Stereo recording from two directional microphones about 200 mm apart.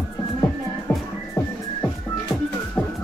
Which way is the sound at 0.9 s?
10° left (ahead or behind).